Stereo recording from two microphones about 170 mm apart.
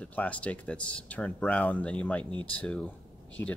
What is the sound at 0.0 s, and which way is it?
Speech, 10° left (ahead or behind).